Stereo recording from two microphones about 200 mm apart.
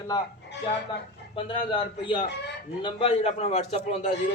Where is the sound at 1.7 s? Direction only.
25° left (ahead or behind).